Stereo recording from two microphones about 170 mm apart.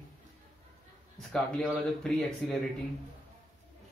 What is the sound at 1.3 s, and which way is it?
A man's voice, 5° left (ahead or behind).